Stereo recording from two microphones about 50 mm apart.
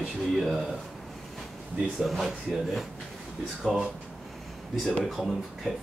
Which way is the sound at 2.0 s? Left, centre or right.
Centre.